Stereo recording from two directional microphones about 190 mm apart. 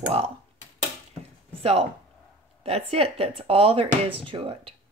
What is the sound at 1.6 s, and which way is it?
Speech, 35° right (ahead or behind).